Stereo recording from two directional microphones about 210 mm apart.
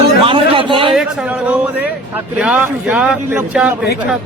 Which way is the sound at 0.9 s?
Centre (ahead or behind).